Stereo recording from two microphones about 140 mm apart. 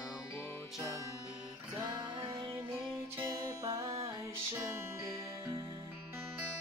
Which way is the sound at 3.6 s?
25° right (ahead or behind).